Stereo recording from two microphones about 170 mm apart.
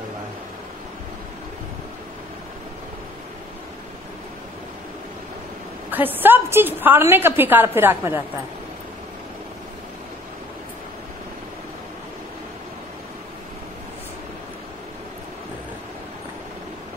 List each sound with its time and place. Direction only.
5.9 s a woman's voice: 10° right (ahead or behind)